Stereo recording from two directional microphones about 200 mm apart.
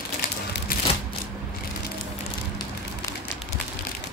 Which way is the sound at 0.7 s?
45° left (ahead or behind).